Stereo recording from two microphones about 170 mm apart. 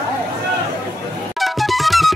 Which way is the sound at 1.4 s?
Centre (ahead or behind).